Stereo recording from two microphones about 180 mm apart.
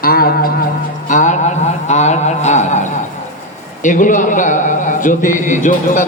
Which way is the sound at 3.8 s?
45° left (ahead or behind).